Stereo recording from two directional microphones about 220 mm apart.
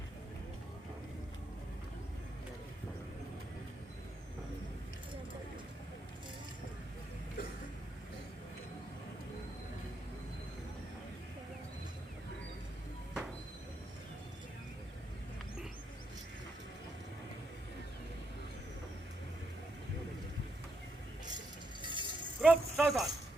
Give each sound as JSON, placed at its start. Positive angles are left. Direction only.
{"t": 7.4, "sound": "a sound", "side_deg": 45}
{"t": 21.8, "sound": "music", "side_deg": -20}
{"t": 22.4, "sound": "speech", "side_deg": 0}